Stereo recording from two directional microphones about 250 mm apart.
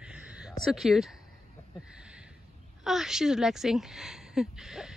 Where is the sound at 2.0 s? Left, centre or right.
Centre.